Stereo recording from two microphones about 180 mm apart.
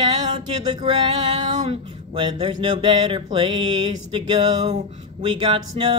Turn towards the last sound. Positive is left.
turn(degrees=-25)  # may be behind; listen again after turning